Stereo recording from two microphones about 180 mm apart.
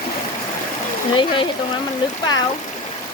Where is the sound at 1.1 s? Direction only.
25° left (ahead or behind).